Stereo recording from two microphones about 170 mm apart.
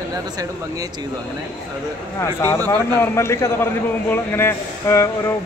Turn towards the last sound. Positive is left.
turn(degrees=15)  # may be behind; listen again after turning